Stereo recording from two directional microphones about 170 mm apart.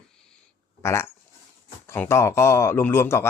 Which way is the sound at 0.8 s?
15° left (ahead or behind).